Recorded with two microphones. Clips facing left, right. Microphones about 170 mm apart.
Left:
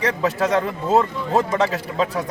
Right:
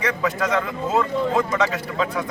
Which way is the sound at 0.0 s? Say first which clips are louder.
Left 2 dB; 30° left (ahead or behind).